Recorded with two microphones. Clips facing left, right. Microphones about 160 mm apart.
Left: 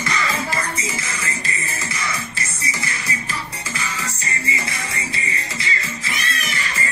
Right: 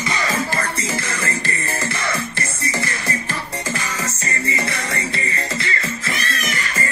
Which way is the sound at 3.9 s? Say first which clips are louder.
Right 3 dB; 45° right (ahead or behind).